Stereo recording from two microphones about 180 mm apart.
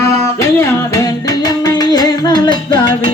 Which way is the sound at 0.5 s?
20° left (ahead or behind).